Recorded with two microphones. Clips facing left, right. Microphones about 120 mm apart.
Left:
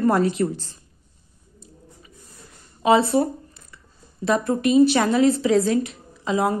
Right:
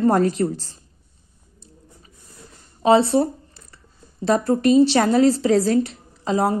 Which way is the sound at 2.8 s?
30° right (ahead or behind).